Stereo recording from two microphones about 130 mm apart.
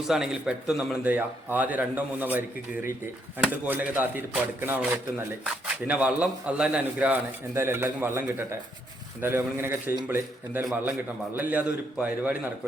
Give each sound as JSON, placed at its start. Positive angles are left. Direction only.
{"t": 0.1, "sound": "a man's voice", "side_deg": -5}